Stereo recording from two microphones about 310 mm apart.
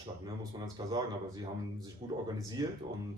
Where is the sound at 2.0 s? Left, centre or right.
Centre.